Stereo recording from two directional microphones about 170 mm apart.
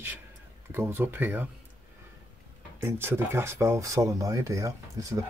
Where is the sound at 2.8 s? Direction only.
15° right (ahead or behind).